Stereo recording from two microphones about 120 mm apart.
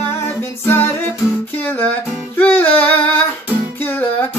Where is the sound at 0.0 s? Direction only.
20° left (ahead or behind).